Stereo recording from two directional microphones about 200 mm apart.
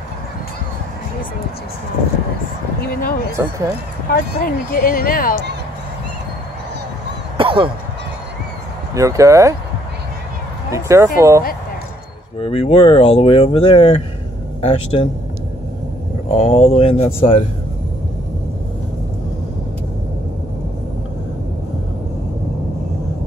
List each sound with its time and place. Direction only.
2.8 s speech: 50° left (ahead or behind)
3.3 s speech: 15° right (ahead or behind)
4.1 s speech: 45° left (ahead or behind)
7.3 s a sound: 25° right (ahead or behind)
8.9 s speech: 15° right (ahead or behind)
10.7 s speech: 15° right (ahead or behind)
12.4 s speech: 30° left (ahead or behind)
16.3 s speech: 30° left (ahead or behind)